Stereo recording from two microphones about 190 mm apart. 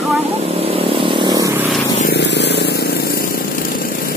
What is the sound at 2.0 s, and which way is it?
Vehicle, 60° left (ahead or behind).